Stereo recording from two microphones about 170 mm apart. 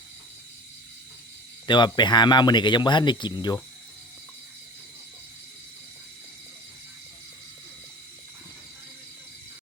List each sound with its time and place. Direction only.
1.6 s speech: 25° left (ahead or behind)